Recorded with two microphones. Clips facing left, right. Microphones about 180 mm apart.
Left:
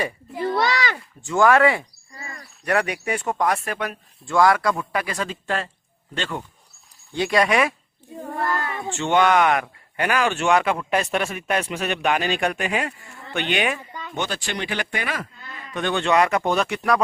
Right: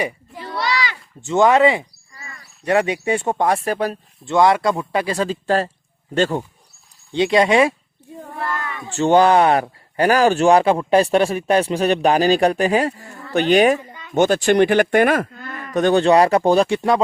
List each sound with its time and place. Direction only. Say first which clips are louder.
0.3 s a sound: left 2 dB; 50° left (ahead or behind)
1.2 s speech: right 3 dB; 25° right (ahead or behind)
2.1 s a sound: left 3 dB; 35° left (ahead or behind)
2.6 s speech: right 5 dB; 25° right (ahead or behind); by 6.4 s 40° right (ahead or behind)
7.1 s speech: right 5 dB; 25° right (ahead or behind)
8.5 s cat: left 1 dB; 30° left (ahead or behind)
8.9 s speech: right 5 dB; 35° right (ahead or behind); by 15.8 s 55° right (ahead or behind)
15.8 s speech: right 6 dB; 40° right (ahead or behind)